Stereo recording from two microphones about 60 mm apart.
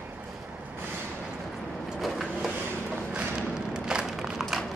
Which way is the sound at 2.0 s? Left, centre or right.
Centre.